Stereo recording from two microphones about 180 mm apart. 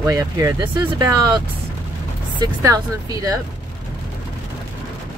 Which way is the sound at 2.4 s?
20° right (ahead or behind).